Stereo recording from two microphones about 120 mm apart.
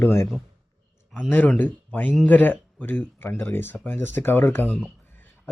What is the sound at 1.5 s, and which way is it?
Speech, 10° left (ahead or behind).